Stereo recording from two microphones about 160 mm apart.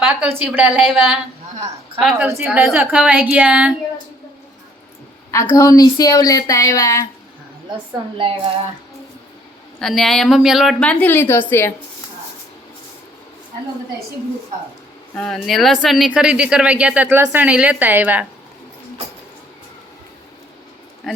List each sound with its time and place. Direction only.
0.0 s speech: 5° right (ahead or behind)
5.3 s a woman's voice: 20° left (ahead or behind)
9.8 s speech: centre (ahead or behind)
15.1 s speech: 5° left (ahead or behind)
21.1 s speech: centre (ahead or behind)